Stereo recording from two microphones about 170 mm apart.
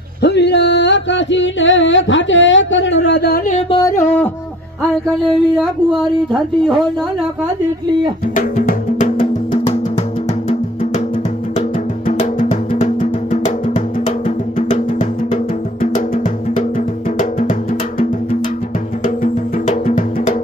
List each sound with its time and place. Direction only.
0.2 s music: 85° left
3.7 s music: 20° left (ahead or behind)
5.6 s speech: centre (ahead or behind)
8.4 s music: 50° left (ahead or behind)
12.1 s music: 45° left (ahead or behind)
14.7 s music: 45° left (ahead or behind)
19.0 s music: 50° left (ahead or behind)